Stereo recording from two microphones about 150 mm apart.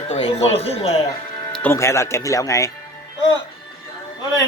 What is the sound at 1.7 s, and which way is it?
Speech, 20° left (ahead or behind).